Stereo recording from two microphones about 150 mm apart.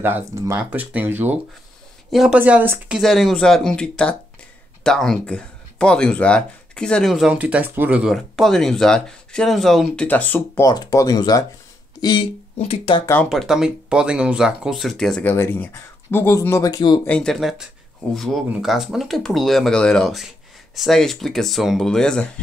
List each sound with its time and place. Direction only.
0.0 s speech: 15° right (ahead or behind)
2.0 s speech: 5° right (ahead or behind)
3.0 s speech: centre (ahead or behind)
10.6 s speech: 25° left (ahead or behind)
12.5 s speech: 40° left (ahead or behind)
13.0 s speech: 15° left (ahead or behind)
13.3 s speech: centre (ahead or behind)
15.3 s speech: 15° left (ahead or behind)
17.0 s speech: 5° left (ahead or behind)